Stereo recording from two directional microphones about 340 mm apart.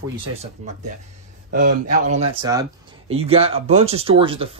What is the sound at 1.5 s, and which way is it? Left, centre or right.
Speech, right.